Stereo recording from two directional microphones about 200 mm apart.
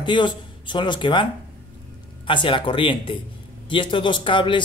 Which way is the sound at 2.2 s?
25° left (ahead or behind).